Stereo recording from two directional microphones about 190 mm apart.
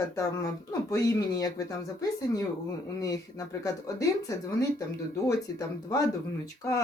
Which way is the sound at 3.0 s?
15° left (ahead or behind).